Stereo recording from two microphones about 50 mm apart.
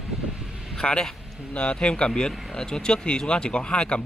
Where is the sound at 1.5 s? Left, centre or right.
Left.